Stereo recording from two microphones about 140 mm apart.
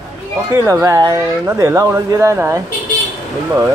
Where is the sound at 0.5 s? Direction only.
25° right (ahead or behind).